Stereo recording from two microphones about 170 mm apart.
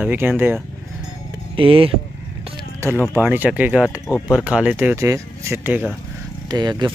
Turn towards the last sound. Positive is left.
turn(degrees=-25)  # may be behind; listen again after turning